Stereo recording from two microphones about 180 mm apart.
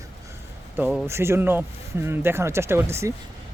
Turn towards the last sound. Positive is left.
turn(degrees=-15)  # may be behind; listen again after turning